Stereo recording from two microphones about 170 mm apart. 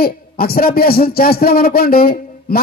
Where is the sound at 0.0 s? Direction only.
60° left (ahead or behind).